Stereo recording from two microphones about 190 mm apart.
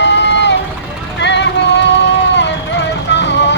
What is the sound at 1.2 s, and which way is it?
Vehicle, 65° left (ahead or behind).